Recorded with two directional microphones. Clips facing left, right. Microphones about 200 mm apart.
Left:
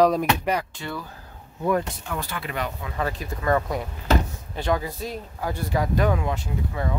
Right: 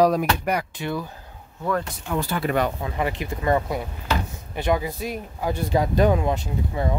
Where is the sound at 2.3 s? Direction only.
45° right (ahead or behind).